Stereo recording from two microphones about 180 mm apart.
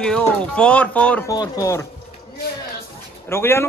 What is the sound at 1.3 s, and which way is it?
Speech, 20° left (ahead or behind).